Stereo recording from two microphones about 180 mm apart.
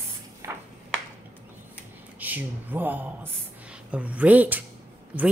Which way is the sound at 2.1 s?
10° right (ahead or behind).